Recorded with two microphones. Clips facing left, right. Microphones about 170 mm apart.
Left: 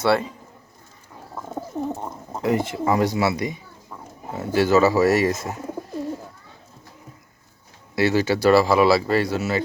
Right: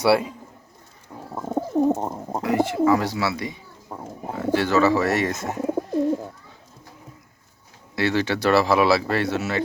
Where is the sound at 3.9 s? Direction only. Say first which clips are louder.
Right 5 dB; 45° right (ahead or behind).